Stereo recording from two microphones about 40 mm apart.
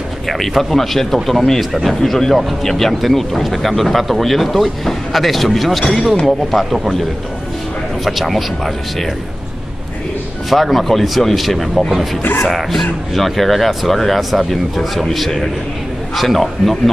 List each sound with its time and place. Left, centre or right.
0.3 s speech: centre
10.5 s speech: centre
12.2 s speech: left
12.4 s speech: centre